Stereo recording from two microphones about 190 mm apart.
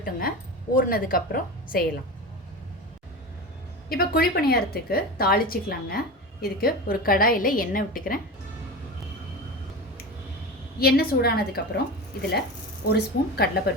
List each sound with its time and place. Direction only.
0.0 s a woman's voice: 50° left (ahead or behind)
3.8 s a woman's voice: 50° left (ahead or behind)
10.8 s a woman's voice: 55° left (ahead or behind)
12.8 s a woman's voice: 55° left (ahead or behind)